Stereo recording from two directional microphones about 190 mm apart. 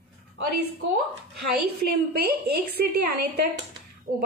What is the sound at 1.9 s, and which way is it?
A woman's voice, 55° right (ahead or behind).